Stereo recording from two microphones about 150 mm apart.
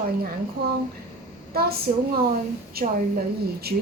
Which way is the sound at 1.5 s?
90° right.